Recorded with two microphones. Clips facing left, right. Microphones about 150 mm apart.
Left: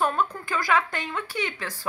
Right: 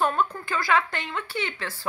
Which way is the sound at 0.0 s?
5° left (ahead or behind).